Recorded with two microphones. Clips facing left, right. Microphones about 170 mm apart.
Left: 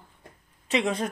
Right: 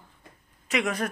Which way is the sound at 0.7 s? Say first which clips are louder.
Left 2 dB; 25° left (ahead or behind).